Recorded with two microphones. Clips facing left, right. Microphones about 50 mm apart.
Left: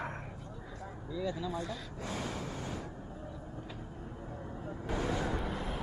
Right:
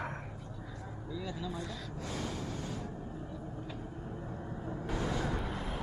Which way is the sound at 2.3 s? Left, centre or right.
Centre.